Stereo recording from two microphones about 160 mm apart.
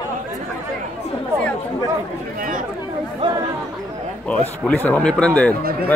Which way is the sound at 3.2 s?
30° right (ahead or behind).